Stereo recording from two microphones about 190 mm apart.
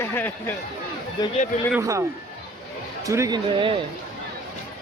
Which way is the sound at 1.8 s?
15° right (ahead or behind).